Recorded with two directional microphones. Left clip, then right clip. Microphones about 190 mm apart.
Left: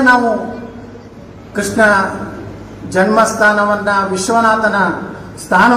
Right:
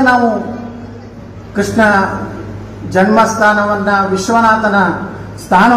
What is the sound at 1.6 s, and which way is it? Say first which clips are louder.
A man's voice: even; 50° left (ahead or behind).